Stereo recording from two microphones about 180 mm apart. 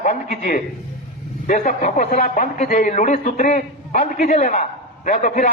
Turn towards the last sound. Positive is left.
turn(degrees=45)  # may be behind; listen again after turning